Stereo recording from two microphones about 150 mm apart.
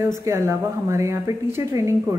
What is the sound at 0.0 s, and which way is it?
A woman's voice, 20° right (ahead or behind).